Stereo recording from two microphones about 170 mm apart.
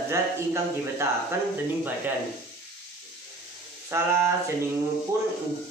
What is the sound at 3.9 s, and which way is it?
Speech, 15° right (ahead or behind).